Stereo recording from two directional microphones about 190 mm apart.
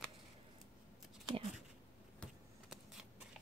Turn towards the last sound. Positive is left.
turn(degrees=0)  # may be behind; listen again after turning